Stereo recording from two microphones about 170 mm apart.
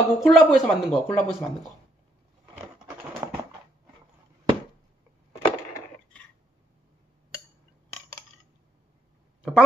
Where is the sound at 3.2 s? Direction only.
15° right (ahead or behind).